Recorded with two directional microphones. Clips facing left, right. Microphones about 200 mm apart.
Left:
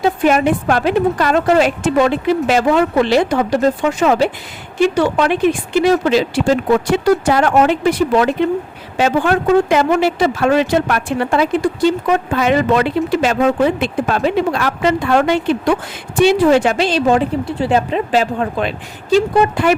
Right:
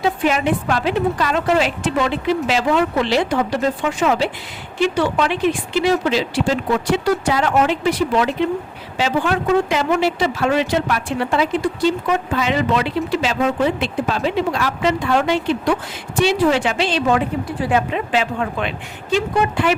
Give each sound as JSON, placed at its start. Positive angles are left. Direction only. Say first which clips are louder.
{"t": 0.0, "sound": "a woman's voice", "louder": "left 5 dB", "side_deg": 45}